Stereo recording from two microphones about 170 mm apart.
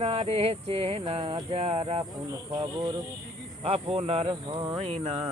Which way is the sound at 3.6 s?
35° right (ahead or behind).